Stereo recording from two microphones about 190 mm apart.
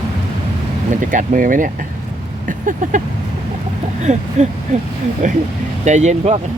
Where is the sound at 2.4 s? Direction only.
45° right (ahead or behind).